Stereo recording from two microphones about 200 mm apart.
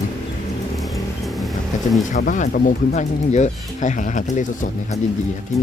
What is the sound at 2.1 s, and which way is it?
Speech, 40° left (ahead or behind).